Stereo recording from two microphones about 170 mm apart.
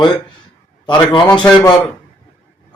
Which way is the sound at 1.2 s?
5° left (ahead or behind).